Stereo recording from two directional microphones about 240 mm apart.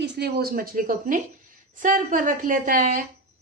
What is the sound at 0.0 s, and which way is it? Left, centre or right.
A woman's voice, right.